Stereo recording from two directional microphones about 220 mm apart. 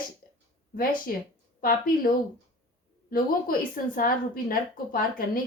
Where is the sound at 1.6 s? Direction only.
40° left (ahead or behind).